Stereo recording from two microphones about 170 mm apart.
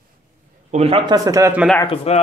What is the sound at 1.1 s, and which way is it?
Speech, 20° right (ahead or behind).